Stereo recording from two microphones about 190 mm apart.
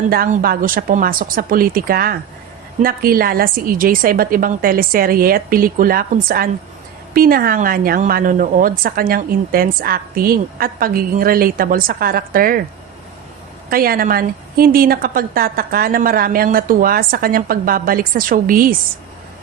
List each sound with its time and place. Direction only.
0.1 s speech: 50° right (ahead or behind)
13.7 s speech: 50° right (ahead or behind)